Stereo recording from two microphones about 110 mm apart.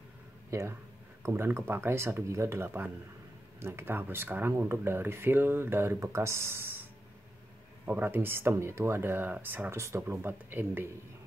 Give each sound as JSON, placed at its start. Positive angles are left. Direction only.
{"t": 0.5, "sound": "speech", "side_deg": -25}